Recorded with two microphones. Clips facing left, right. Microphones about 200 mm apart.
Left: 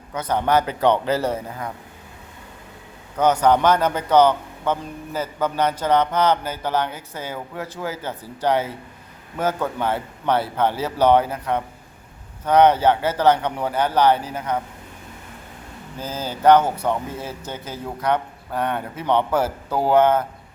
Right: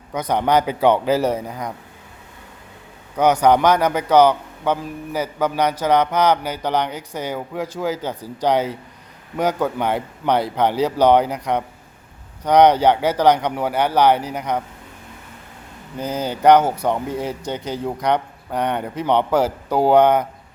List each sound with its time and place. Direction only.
0.1 s a man's voice: 15° right (ahead or behind)
3.4 s a man's voice: 10° right (ahead or behind)
16.0 s a man's voice: 15° right (ahead or behind)